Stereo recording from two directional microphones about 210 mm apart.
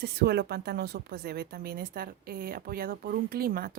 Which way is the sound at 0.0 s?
50° right (ahead or behind).